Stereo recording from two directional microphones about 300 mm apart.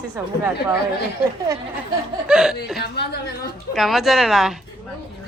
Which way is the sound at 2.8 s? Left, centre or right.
Left.